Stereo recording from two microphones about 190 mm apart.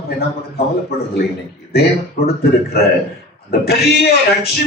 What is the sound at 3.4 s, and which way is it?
Speech, 55° left (ahead or behind).